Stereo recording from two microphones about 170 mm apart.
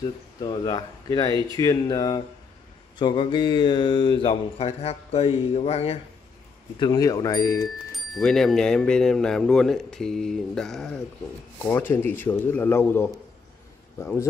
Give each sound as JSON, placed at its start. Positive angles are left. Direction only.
{"t": 0.4, "sound": "speech", "side_deg": 25}
{"t": 6.8, "sound": "speech", "side_deg": 20}
{"t": 7.9, "sound": "speech", "side_deg": 5}
{"t": 11.6, "sound": "a man's voice", "side_deg": 15}